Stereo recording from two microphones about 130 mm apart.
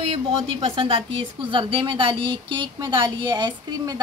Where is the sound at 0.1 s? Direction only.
45° right (ahead or behind).